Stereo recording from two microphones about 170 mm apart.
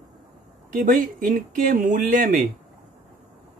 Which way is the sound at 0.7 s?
55° right (ahead or behind).